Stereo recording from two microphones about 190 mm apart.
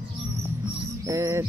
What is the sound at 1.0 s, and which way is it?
Bird, 15° right (ahead or behind).